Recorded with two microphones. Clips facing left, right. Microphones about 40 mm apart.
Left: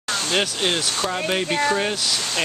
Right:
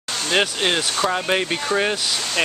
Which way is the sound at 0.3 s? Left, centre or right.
Centre.